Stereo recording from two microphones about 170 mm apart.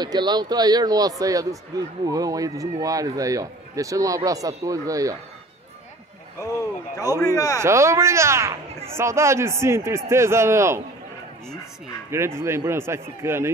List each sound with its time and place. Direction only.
0.0 s speech: 25° right (ahead or behind)
7.0 s speech: 20° left (ahead or behind)
7.6 s speech: 15° right (ahead or behind)
12.1 s speech: 15° right (ahead or behind)